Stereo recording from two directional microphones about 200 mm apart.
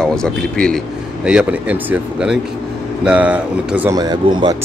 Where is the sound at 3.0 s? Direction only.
5° right (ahead or behind).